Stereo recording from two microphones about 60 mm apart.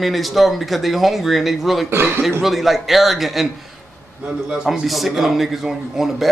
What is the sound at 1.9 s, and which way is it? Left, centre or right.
Speech, right.